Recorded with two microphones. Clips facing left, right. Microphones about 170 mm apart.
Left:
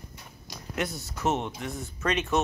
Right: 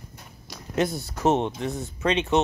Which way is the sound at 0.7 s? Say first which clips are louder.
Right 7 dB; 30° right (ahead or behind).